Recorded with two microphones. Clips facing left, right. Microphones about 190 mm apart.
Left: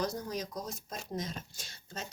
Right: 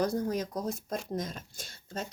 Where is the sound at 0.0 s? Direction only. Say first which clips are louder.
Right 6 dB; 55° right (ahead or behind).